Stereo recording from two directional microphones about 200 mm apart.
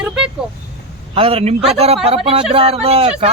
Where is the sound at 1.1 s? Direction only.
30° right (ahead or behind).